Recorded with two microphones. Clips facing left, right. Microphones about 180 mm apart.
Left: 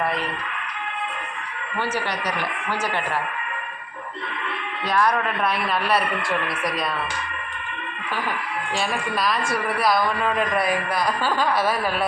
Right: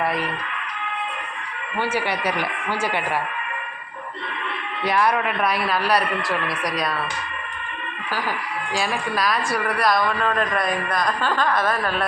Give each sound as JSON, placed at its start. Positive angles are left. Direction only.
{"t": 1.9, "sound": "speech", "side_deg": -10}
{"t": 4.9, "sound": "speech", "side_deg": -10}
{"t": 8.7, "sound": "speech", "side_deg": 0}